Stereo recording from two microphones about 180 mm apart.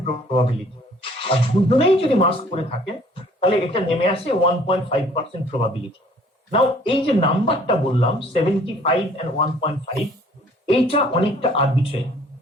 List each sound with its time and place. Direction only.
1.2 s speech: 30° left (ahead or behind)